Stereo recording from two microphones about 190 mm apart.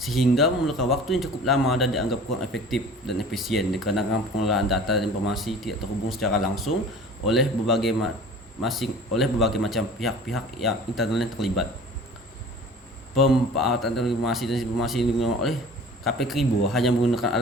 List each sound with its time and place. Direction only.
0.0 s a man's voice: centre (ahead or behind)
13.1 s a man's voice: centre (ahead or behind)